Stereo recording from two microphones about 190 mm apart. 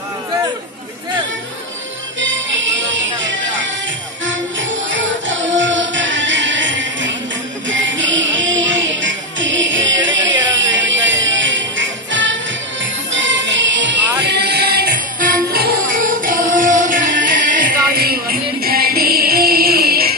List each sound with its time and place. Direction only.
2.1 s music: 80° right; by 20.2 s 55° right (ahead or behind)